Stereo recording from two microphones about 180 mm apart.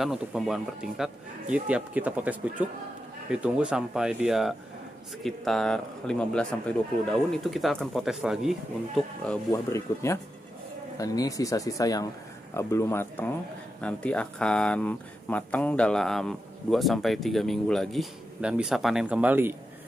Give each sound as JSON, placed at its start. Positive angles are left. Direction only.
{"t": 0.0, "sound": "speech", "side_deg": 0}
{"t": 9.5, "sound": "speech", "side_deg": 15}